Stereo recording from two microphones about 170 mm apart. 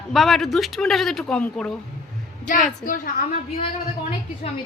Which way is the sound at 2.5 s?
50° left (ahead or behind).